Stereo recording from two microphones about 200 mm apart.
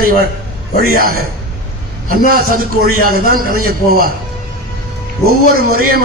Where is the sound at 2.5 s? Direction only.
45° right (ahead or behind).